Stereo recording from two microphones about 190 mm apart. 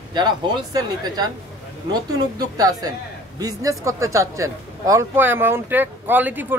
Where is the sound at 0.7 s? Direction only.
20° right (ahead or behind).